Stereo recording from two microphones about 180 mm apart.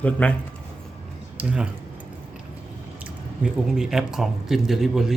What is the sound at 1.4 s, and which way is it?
Speech, 5° right (ahead or behind).